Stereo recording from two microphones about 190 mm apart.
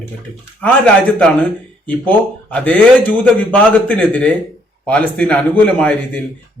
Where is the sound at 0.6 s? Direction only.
5° left (ahead or behind).